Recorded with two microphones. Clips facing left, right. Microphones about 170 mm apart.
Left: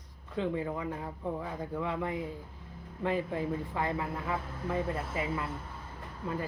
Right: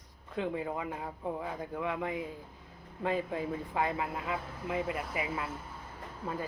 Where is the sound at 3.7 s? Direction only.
15° right (ahead or behind).